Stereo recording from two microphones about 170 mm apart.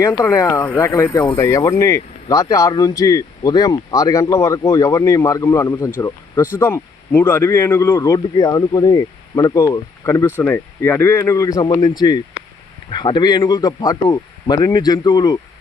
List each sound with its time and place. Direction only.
0.0 s speech: 15° left (ahead or behind)